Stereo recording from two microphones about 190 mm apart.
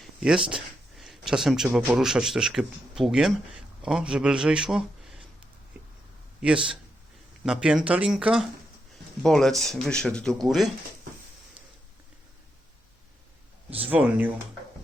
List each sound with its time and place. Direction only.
0.0 s speech: 5° right (ahead or behind)
6.4 s speech: 5° right (ahead or behind)
13.7 s speech: 30° right (ahead or behind)
13.9 s speech: 10° right (ahead or behind)